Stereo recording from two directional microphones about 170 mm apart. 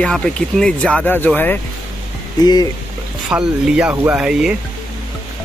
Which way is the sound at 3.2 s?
5° right (ahead or behind).